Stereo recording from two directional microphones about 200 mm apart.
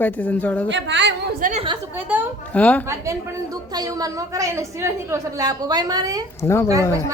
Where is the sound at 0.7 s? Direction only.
65° right (ahead or behind); by 1.6 s 40° right (ahead or behind).